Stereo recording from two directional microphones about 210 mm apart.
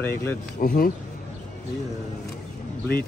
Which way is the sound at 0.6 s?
45° left (ahead or behind).